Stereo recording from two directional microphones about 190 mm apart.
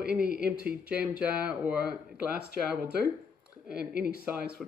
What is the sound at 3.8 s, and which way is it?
Speech, 55° right (ahead or behind).